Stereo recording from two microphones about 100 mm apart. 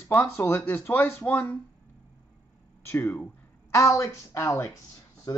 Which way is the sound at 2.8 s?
25° left (ahead or behind).